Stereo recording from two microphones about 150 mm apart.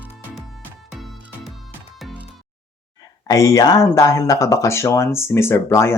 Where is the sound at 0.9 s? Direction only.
Centre (ahead or behind).